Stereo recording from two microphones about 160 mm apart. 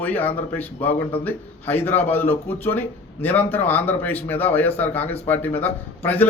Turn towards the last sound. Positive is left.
turn(degrees=10)  # may be behind; listen again after turning